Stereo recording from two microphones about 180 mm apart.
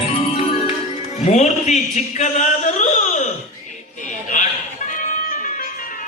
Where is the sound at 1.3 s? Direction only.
40° left (ahead or behind).